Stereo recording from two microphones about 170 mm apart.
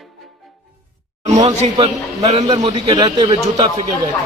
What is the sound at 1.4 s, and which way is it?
Speech, 40° right (ahead or behind).